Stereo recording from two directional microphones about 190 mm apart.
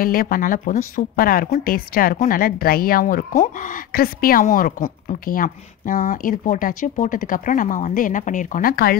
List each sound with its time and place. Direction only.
0.0 s speech: 50° left (ahead or behind)